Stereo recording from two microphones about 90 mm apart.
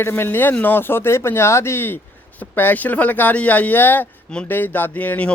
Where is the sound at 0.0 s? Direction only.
25° left (ahead or behind).